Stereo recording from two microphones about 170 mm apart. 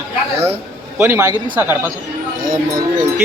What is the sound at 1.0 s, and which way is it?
Speech, 15° right (ahead or behind).